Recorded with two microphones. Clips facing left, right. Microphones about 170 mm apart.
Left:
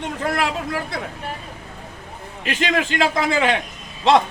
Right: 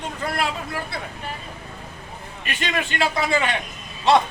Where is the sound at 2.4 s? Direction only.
90° left.